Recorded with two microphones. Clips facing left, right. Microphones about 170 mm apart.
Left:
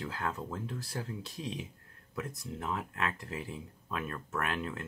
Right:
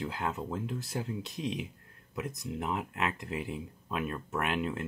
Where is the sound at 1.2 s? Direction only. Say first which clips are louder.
Right 5 dB; 30° left (ahead or behind).